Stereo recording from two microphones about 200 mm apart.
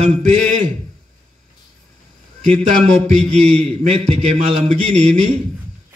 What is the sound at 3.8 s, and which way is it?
A man's voice, 35° right (ahead or behind).